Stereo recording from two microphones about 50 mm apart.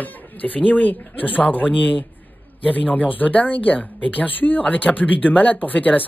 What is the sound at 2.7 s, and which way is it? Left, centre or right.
Speech, left.